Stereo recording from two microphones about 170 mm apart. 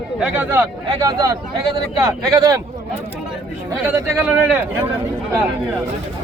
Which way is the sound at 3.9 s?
10° right (ahead or behind).